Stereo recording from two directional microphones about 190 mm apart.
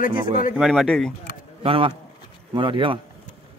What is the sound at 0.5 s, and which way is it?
Speech, centre (ahead or behind).